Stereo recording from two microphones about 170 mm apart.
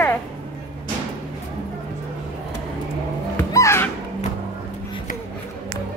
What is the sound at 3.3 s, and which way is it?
Music, 15° left (ahead or behind).